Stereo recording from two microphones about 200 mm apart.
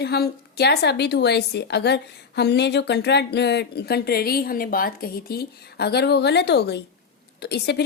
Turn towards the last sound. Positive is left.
turn(degrees=55)  # may be behind; listen again after turning